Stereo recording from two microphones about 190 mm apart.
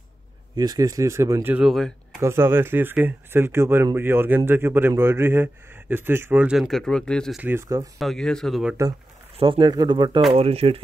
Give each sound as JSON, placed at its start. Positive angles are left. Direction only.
{"t": 0.6, "sound": "speech", "side_deg": -20}
{"t": 2.1, "sound": "speech", "side_deg": -15}
{"t": 7.4, "sound": "speech", "side_deg": -15}
{"t": 8.0, "sound": "speech", "side_deg": 0}
{"t": 9.4, "sound": "speech", "side_deg": -25}